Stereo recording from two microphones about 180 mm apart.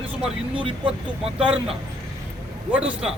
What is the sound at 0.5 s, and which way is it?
Speech, 30° right (ahead or behind).